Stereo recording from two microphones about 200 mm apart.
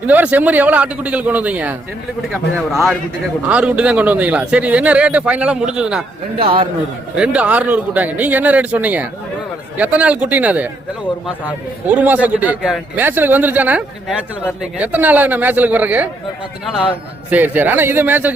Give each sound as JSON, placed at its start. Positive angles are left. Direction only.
{"t": 0.1, "sound": "a man's voice", "side_deg": -10}
{"t": 6.4, "sound": "a man's voice", "side_deg": -25}
{"t": 7.2, "sound": "a man's voice", "side_deg": -5}